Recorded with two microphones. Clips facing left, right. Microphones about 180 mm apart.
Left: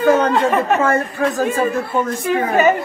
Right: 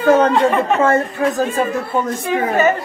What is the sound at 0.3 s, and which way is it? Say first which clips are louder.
Speech: right 1 dB; centre (ahead or behind).